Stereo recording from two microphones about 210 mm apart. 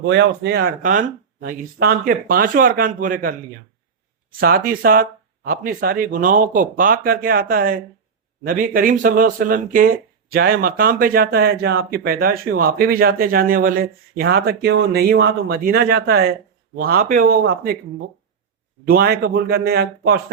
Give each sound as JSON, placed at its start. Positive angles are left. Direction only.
{"t": 0.0, "sound": "speech", "side_deg": -55}
{"t": 4.4, "sound": "speech", "side_deg": -45}
{"t": 18.9, "sound": "speech", "side_deg": -45}